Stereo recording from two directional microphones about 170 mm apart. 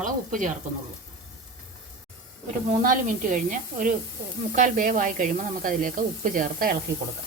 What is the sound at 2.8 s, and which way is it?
Speech, 50° right (ahead or behind).